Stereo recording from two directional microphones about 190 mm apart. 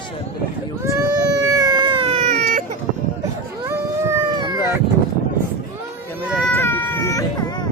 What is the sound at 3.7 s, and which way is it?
Howl, 15° right (ahead or behind).